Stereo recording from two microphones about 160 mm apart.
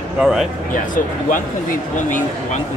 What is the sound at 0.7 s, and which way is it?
Speech, 55° left (ahead or behind).